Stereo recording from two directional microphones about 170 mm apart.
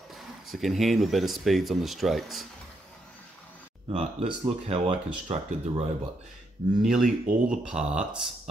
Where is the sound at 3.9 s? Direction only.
40° right (ahead or behind).